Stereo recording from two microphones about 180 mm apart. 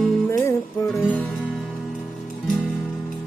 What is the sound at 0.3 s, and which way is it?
Music, 15° left (ahead or behind).